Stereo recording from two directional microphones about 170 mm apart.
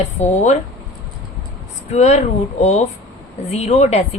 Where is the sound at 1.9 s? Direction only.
40° left (ahead or behind).